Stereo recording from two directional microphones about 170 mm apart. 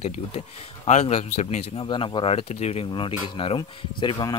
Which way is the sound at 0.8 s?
40° left (ahead or behind).